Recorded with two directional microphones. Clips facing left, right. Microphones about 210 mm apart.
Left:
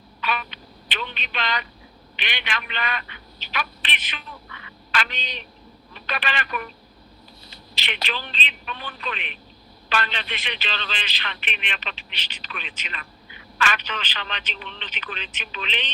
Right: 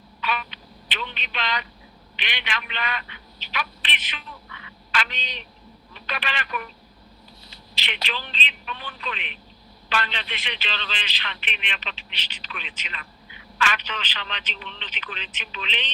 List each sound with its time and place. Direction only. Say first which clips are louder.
0.2 s telephone: left 1 dB; 50° left (ahead or behind)
2.1 s a woman's voice: left 1 dB; 50° left (ahead or behind)